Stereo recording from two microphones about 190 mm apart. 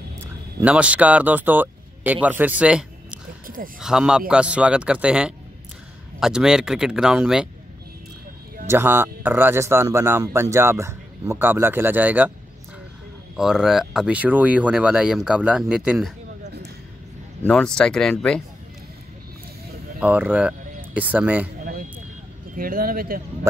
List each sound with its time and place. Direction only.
0.6 s speech: 5° right (ahead or behind)
3.4 s speech: 50° right (ahead or behind)
3.8 s speech: 5° right (ahead or behind)
8.6 s speech: 10° right (ahead or behind)
13.4 s speech: 5° right (ahead or behind)
16.4 s a sound: 60° right (ahead or behind)
17.4 s speech: 5° left (ahead or behind)
20.0 s speech: 10° right (ahead or behind)
22.6 s a man's voice: 50° right (ahead or behind)